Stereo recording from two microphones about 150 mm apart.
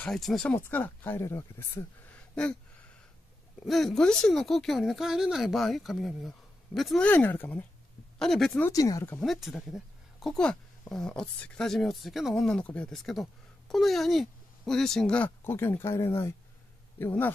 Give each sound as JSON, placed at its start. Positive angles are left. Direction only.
{"t": 0.0, "sound": "speech", "side_deg": 0}
{"t": 3.6, "sound": "speech", "side_deg": 0}
{"t": 7.1, "sound": "speech", "side_deg": 10}
{"t": 8.2, "sound": "speech", "side_deg": 0}
{"t": 8.5, "sound": "speech", "side_deg": 20}
{"t": 9.2, "sound": "speech", "side_deg": 0}